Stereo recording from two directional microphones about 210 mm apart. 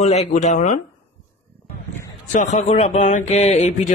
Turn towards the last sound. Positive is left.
turn(degrees=35)  # may be behind; listen again after turning